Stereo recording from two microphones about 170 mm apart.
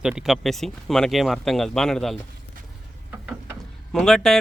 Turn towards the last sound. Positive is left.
turn(degrees=5)  # may be behind; listen again after turning